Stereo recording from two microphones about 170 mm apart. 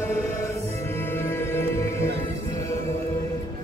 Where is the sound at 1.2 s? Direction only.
15° left (ahead or behind).